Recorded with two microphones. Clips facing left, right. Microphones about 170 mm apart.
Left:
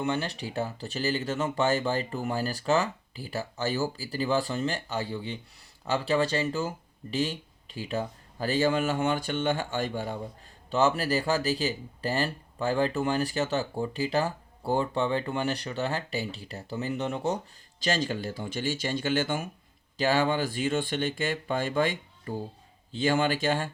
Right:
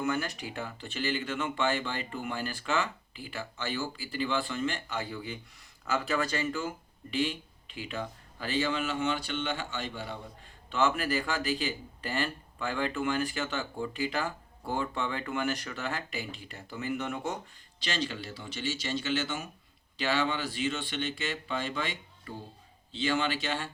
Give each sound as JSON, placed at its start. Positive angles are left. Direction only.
{"t": 0.0, "sound": "speech", "side_deg": 30}
{"t": 17.7, "sound": "speech", "side_deg": 45}